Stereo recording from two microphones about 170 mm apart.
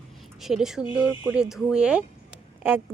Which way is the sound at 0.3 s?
Centre (ahead or behind).